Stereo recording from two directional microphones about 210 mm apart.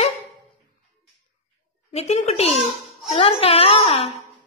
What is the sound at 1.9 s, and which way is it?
Speech, 30° left (ahead or behind).